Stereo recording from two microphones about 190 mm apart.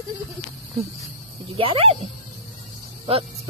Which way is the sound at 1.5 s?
30° right (ahead or behind).